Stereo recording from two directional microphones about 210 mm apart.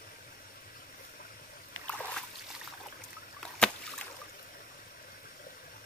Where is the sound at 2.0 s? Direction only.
5° left (ahead or behind).